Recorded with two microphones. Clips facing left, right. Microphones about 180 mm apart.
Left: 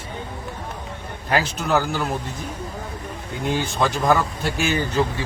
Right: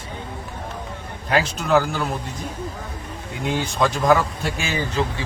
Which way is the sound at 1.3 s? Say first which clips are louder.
Right 2 dB; centre (ahead or behind).